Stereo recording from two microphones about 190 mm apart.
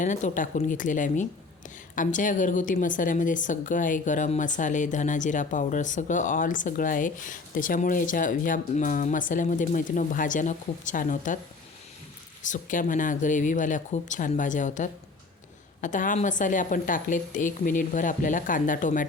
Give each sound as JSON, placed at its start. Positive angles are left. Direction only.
{"t": 0.0, "sound": "speech", "side_deg": 40}
{"t": 12.5, "sound": "speech", "side_deg": 45}